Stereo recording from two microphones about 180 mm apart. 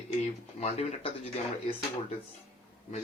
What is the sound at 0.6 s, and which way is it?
Speech, 35° left (ahead or behind).